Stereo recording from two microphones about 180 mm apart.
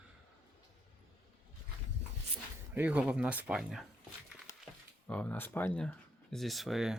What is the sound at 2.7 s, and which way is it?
Speech, 10° right (ahead or behind).